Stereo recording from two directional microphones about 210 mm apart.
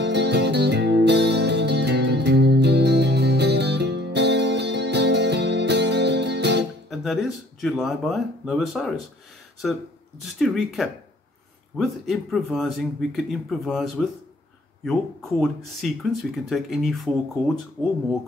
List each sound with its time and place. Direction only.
0.0 s music: 55° right (ahead or behind)
6.9 s speech: centre (ahead or behind)